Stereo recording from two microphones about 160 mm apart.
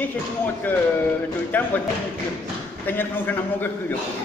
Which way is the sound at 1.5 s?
10° left (ahead or behind).